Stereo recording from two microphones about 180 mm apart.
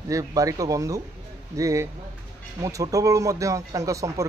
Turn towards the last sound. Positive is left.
turn(degrees=-15)  # may be behind; listen again after turning